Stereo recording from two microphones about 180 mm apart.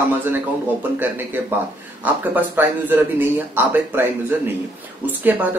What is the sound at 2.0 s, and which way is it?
Speech, 10° right (ahead or behind).